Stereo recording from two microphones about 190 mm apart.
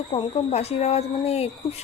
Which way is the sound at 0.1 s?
30° left (ahead or behind).